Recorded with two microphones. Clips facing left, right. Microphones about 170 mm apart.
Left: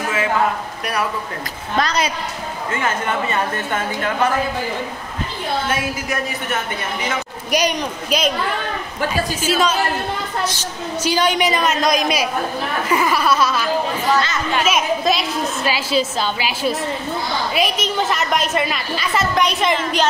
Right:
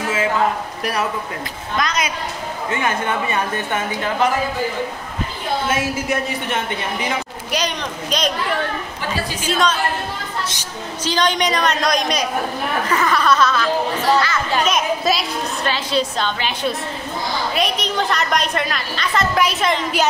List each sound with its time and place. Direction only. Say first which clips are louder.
1.8 s a woman's voice: left 2 dB; 30° left (ahead or behind)
2.7 s a woman's voice: even; 15° right (ahead or behind)
5.7 s a woman's voice: right 2 dB; 25° right (ahead or behind)
7.5 s speech: left 4 dB; 10° left (ahead or behind)
9.5 s a woman's voice: even; 5° left (ahead or behind)
11.1 s a woman's voice: left 1 dB; 10° left (ahead or behind)